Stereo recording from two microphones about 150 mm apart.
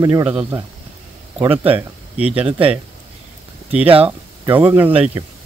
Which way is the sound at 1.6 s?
10° right (ahead or behind).